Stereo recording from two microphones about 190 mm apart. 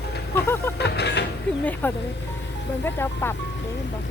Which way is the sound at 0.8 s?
60° left (ahead or behind).